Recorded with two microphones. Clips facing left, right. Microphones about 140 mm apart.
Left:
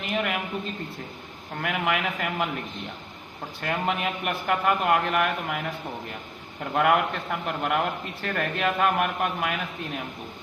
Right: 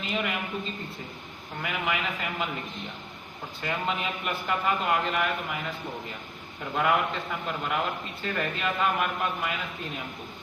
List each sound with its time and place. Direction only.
0.0 s a sound: 60° left (ahead or behind)
1.6 s a man's voice: 60° left (ahead or behind)
3.6 s a man's voice: 60° left (ahead or behind)
6.7 s a man's voice: 60° left (ahead or behind)